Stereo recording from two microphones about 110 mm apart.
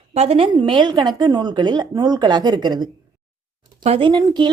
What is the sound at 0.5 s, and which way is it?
A woman's voice, 45° right (ahead or behind).